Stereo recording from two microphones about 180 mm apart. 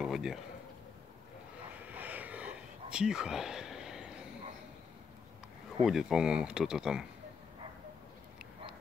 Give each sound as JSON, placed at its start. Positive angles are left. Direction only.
{"t": 0.0, "sound": "speech", "side_deg": 0}
{"t": 1.7, "sound": "a sound", "side_deg": -10}
{"t": 5.9, "sound": "speech", "side_deg": -5}